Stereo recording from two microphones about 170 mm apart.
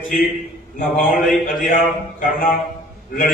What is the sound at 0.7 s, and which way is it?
Speech, 55° left (ahead or behind).